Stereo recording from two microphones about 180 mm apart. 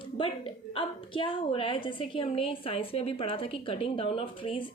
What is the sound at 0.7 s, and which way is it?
A woman's voice, 30° left (ahead or behind).